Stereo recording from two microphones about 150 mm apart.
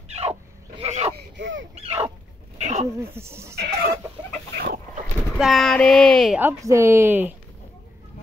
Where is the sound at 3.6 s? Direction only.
90° right.